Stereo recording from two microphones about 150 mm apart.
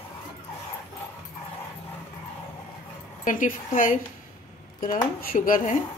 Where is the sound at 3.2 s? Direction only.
60° left (ahead or behind).